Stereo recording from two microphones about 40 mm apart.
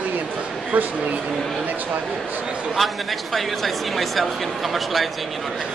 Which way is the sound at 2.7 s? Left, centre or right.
Centre.